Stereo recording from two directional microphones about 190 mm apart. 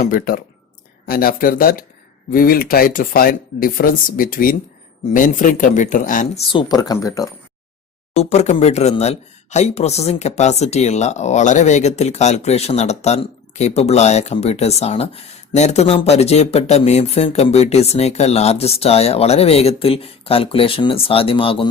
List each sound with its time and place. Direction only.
0.0 s speech: 50° left (ahead or behind)
6.5 s speech: 25° left (ahead or behind)
8.1 s speech: 35° left (ahead or behind)